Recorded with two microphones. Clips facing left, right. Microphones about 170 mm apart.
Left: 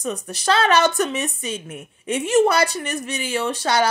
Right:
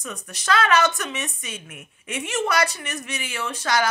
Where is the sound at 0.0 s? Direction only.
30° left (ahead or behind).